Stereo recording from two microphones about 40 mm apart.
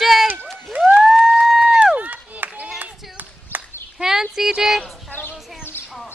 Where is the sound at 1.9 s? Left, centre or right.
Right.